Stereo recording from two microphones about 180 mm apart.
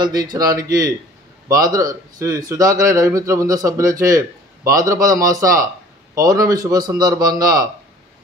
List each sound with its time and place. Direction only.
0.0 s a man's voice: 25° right (ahead or behind)